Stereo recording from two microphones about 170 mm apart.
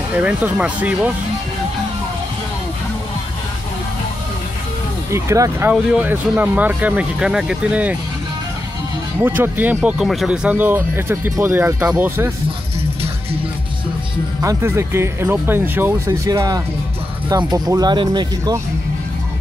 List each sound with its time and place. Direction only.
0.1 s speech: 10° right (ahead or behind)
5.1 s speech: 15° right (ahead or behind)
9.2 s speech: 10° right (ahead or behind)
14.4 s speech: 20° right (ahead or behind)